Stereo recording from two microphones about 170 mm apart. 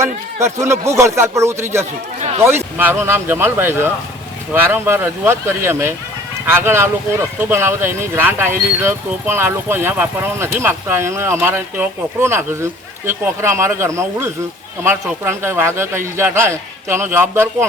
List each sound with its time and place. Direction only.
0.0 s speech: 15° right (ahead or behind)